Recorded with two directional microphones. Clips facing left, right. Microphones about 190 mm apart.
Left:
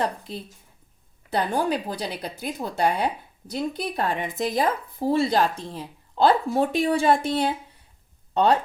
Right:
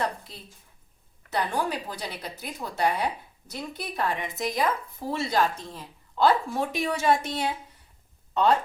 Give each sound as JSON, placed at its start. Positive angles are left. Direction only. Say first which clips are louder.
{"t": 1.3, "sound": "speech", "louder": "left 4 dB", "side_deg": 30}